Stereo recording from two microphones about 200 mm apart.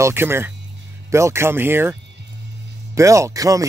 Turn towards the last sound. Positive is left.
turn(degrees=-15)  # may be behind; listen again after turning